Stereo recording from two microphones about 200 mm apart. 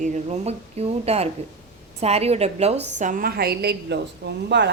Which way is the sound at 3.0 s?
45° right (ahead or behind).